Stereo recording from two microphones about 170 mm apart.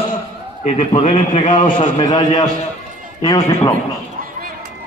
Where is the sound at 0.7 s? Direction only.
35° left (ahead or behind); by 3.7 s 20° left (ahead or behind).